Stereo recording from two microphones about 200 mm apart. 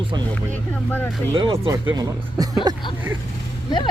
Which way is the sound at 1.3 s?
25° right (ahead or behind).